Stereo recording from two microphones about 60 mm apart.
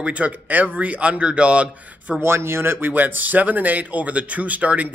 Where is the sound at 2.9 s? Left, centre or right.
Right.